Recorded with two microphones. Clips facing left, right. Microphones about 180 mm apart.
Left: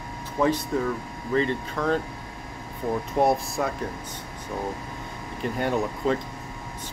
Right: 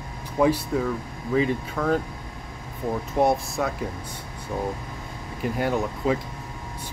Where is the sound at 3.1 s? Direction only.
Centre (ahead or behind).